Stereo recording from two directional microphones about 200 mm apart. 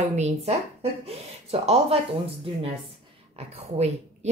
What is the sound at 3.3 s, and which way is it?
Speech, 30° right (ahead or behind).